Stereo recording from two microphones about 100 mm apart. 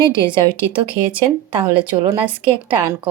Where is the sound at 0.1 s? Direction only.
55° right (ahead or behind).